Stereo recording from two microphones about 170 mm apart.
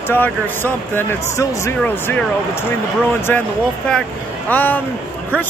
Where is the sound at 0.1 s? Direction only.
10° left (ahead or behind).